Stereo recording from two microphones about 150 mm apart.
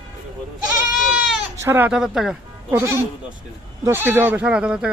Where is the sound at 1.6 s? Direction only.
15° right (ahead or behind).